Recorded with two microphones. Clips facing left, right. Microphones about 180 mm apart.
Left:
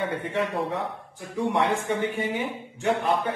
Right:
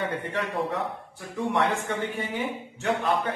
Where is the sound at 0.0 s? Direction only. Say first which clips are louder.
Left 1 dB; 20° left (ahead or behind).